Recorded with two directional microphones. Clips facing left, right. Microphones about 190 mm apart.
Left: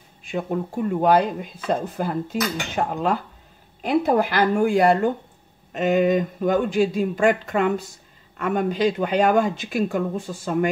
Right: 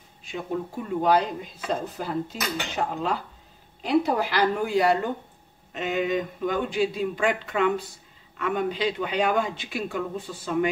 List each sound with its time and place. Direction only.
0.2 s speech: 50° left (ahead or behind)